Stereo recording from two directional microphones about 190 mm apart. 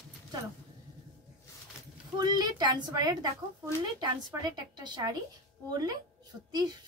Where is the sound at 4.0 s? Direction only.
20° right (ahead or behind).